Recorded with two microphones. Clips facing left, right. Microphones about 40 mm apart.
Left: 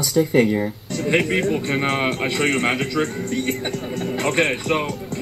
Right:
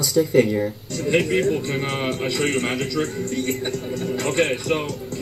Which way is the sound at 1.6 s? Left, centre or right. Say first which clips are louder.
Left 4 dB; left.